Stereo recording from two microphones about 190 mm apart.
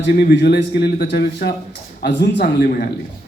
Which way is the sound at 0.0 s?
60° left (ahead or behind).